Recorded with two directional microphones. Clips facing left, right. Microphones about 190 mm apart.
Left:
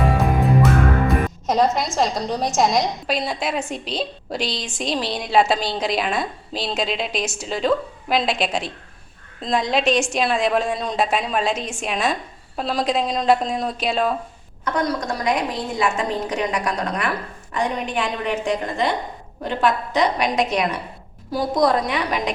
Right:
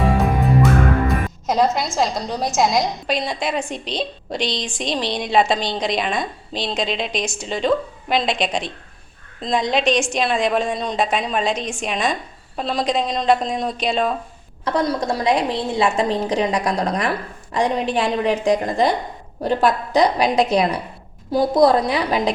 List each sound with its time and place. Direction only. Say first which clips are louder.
0.0 s a woman's voice: right 1 dB; centre (ahead or behind)
14.6 s a woman's voice: right 2 dB; 30° right (ahead or behind)